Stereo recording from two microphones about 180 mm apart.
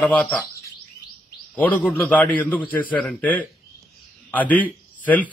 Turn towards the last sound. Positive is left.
turn(degrees=10)  # may be behind; listen again after turning